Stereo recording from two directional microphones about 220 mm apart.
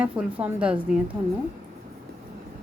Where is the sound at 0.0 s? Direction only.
5° right (ahead or behind).